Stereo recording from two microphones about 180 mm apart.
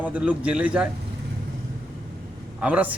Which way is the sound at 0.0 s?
10° right (ahead or behind).